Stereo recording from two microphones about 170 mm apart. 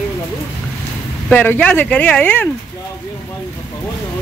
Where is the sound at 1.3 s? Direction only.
10° left (ahead or behind).